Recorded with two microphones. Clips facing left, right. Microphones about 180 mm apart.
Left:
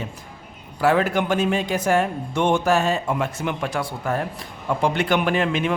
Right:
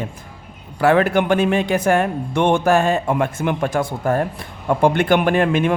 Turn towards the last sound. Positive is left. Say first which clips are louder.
# right 5 dB
turn(degrees=-50)  # may be behind; listen again after turning